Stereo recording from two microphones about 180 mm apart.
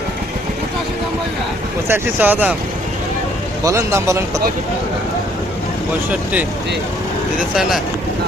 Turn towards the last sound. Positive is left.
turn(degrees=0)  # may be behind; listen again after turning